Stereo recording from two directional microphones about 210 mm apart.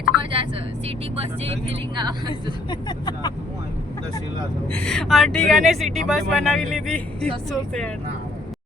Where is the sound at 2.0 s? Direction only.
20° right (ahead or behind).